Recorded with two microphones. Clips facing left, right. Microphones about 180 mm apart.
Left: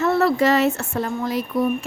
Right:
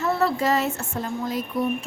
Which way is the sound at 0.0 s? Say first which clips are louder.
Left 5 dB; 75° left (ahead or behind).